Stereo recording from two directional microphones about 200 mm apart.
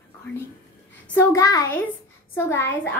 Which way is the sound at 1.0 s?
15° left (ahead or behind).